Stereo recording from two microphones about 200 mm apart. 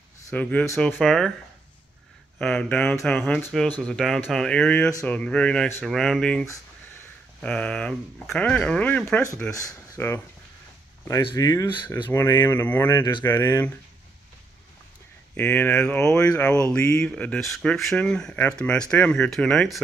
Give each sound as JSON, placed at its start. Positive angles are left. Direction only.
{"t": 0.3, "sound": "speech", "side_deg": 5}
{"t": 2.3, "sound": "speech", "side_deg": 5}
{"t": 6.4, "sound": "a sound", "side_deg": 15}
{"t": 7.4, "sound": "speech", "side_deg": 5}
{"t": 12.9, "sound": "speech", "side_deg": 20}
{"t": 15.3, "sound": "speech", "side_deg": 10}